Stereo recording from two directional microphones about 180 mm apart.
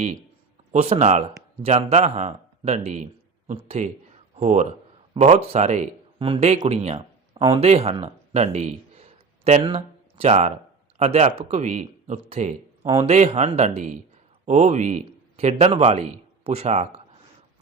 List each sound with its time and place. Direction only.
0.7 s speech: 40° right (ahead or behind)
8.0 s a sound: 40° right (ahead or behind)
10.9 s a man's voice: 40° right (ahead or behind)